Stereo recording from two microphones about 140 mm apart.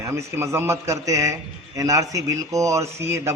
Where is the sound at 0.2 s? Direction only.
20° right (ahead or behind).